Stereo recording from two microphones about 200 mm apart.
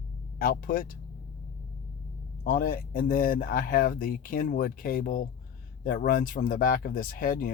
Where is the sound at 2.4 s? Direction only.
45° left (ahead or behind).